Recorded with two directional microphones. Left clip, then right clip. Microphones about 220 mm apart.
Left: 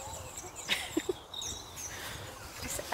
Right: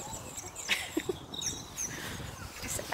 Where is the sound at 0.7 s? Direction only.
5° left (ahead or behind).